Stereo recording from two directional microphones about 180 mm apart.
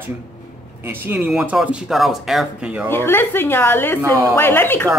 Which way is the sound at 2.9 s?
10° left (ahead or behind).